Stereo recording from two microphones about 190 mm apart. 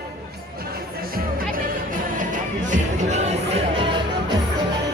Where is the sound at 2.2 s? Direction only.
45° right (ahead or behind).